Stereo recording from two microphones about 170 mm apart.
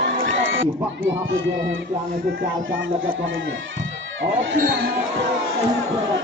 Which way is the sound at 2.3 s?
75° right (ahead or behind).